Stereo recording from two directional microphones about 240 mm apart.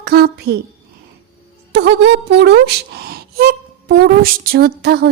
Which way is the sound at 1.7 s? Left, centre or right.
Right.